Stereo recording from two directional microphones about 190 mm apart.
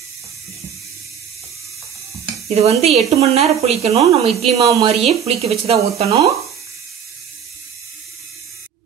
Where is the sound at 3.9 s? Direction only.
15° right (ahead or behind).